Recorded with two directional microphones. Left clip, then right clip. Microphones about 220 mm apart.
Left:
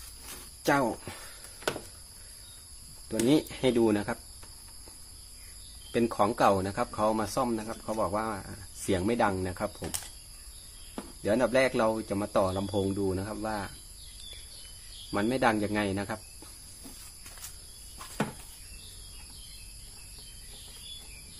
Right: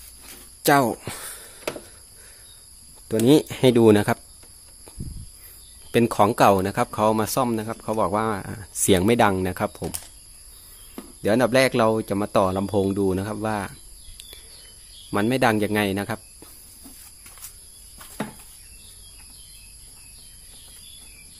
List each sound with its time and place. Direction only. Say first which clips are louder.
0.7 s speech: right 8 dB; 50° right (ahead or behind)
3.1 s speech: right 9 dB; 50° right (ahead or behind)
5.9 s speech: right 8 dB; 45° right (ahead or behind)
11.2 s speech: right 7 dB; 50° right (ahead or behind)
15.0 s speech: right 6 dB; 45° right (ahead or behind)